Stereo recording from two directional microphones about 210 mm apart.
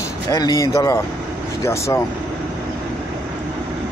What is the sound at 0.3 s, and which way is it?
Speech, 15° left (ahead or behind).